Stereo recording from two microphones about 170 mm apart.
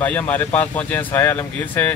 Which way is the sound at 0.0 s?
10° left (ahead or behind).